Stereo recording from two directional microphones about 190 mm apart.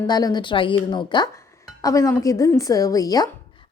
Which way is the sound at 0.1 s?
20° left (ahead or behind).